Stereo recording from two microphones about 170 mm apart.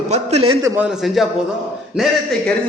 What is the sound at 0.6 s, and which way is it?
Speech, 15° right (ahead or behind).